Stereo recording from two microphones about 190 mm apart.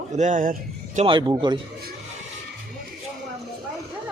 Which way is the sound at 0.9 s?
25° right (ahead or behind).